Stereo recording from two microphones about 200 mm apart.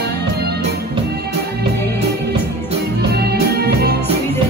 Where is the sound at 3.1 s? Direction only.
50° right (ahead or behind).